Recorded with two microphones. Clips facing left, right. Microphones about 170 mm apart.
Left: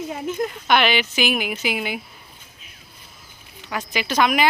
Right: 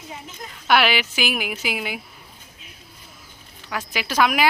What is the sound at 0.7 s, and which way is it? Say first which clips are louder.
A woman's voice: right 1 dB; 5° right (ahead or behind).